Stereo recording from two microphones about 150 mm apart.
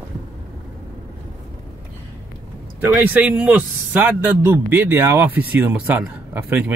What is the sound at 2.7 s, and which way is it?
A man's voice, 10° right (ahead or behind).